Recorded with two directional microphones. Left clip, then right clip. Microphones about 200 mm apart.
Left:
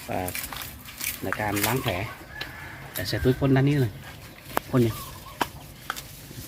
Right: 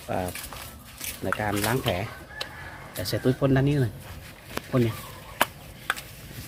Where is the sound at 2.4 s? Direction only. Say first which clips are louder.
Right 1 dB; 60° right (ahead or behind).